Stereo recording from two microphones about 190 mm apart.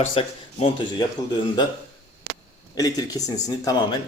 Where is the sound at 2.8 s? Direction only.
20° left (ahead or behind).